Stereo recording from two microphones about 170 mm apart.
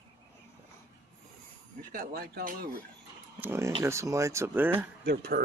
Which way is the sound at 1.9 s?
65° right (ahead or behind).